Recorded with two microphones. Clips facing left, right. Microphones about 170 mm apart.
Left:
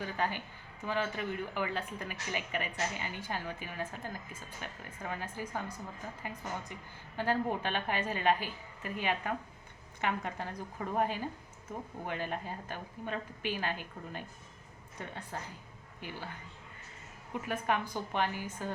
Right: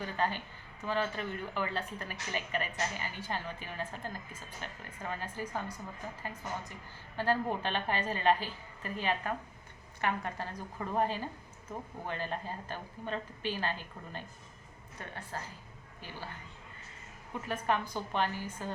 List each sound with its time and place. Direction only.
0.2 s speech: 15° left (ahead or behind)
7.2 s speech: 15° left (ahead or behind)
17.4 s speech: 15° left (ahead or behind)